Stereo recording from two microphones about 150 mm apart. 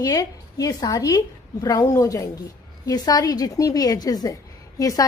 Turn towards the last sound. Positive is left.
turn(degrees=25)  # may be behind; listen again after turning